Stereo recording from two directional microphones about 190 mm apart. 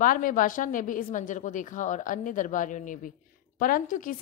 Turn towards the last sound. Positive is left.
turn(degrees=45)  # may be behind; listen again after turning